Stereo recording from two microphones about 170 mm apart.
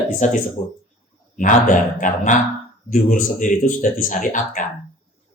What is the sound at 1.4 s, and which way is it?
Speech, 50° left (ahead or behind).